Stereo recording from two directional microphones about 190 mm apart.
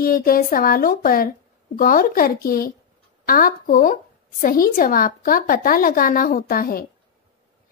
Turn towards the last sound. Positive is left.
turn(degrees=50)  # may be behind; listen again after turning